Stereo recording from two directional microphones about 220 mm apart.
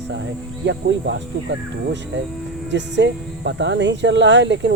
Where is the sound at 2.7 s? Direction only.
55° right (ahead or behind).